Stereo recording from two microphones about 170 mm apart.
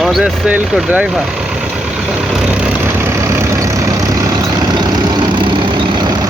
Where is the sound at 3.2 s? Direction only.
20° right (ahead or behind).